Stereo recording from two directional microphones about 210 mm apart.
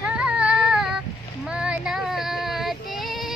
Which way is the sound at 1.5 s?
5° right (ahead or behind).